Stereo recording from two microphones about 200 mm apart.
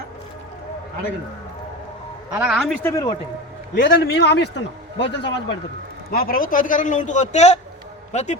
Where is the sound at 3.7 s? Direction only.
55° left (ahead or behind).